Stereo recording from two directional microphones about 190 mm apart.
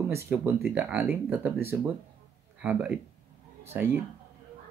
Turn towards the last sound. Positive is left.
turn(degrees=-10)  # may be behind; listen again after turning